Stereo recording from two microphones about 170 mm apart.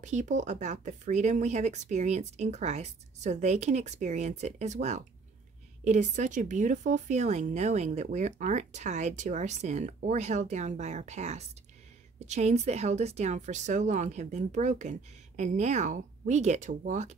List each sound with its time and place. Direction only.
0.0 s speech: 45° right (ahead or behind)